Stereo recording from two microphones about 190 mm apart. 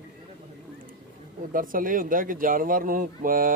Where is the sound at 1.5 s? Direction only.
45° right (ahead or behind).